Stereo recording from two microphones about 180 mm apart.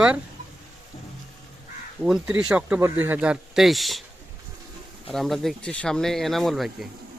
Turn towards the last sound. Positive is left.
turn(degrees=0)  # may be behind; listen again after turning